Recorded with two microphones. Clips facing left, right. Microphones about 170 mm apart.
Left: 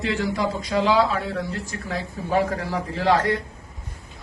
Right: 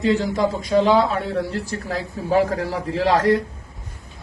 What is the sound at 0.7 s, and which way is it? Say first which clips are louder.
Speech: right 4 dB; 25° right (ahead or behind).